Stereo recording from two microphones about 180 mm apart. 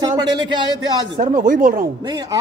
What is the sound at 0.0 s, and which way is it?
Speech, 25° right (ahead or behind).